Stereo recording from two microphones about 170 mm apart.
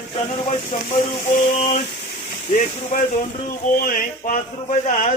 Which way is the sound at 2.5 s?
45° left (ahead or behind).